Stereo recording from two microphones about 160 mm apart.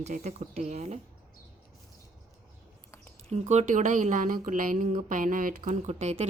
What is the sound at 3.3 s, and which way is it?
Speech, 45° right (ahead or behind).